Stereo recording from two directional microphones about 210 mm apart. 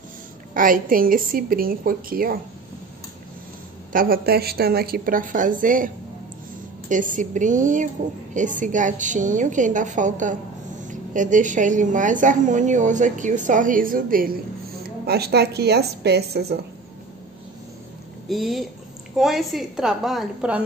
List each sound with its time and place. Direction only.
0.6 s a woman's voice: 40° right (ahead or behind)
3.9 s a woman's voice: 45° right (ahead or behind)
6.9 s a woman's voice: 40° right (ahead or behind)
18.3 s a woman's voice: centre (ahead or behind)